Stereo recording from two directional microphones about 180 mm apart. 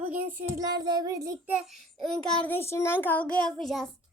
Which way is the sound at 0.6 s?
20° right (ahead or behind).